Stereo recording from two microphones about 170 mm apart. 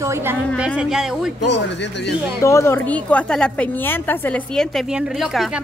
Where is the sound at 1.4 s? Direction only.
90° left.